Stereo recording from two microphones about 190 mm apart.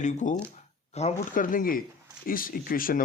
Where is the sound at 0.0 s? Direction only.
40° left (ahead or behind).